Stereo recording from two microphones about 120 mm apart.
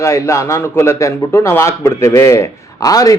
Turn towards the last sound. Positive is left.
turn(degrees=30)  # may be behind; listen again after turning